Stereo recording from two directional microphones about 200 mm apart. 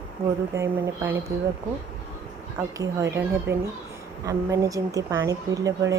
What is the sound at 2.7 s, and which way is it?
A woman's voice, 15° right (ahead or behind).